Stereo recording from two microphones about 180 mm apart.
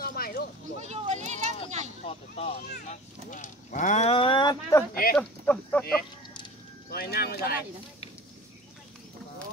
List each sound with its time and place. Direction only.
0.0 s sheep: 55° left (ahead or behind)
0.7 s a sound: 40° right (ahead or behind)
2.1 s speech: 30° left (ahead or behind)
2.9 s speech: 45° left (ahead or behind); by 4.8 s 20° left (ahead or behind)
5.1 s speech: 10° left (ahead or behind)
6.9 s speech: 60° left (ahead or behind)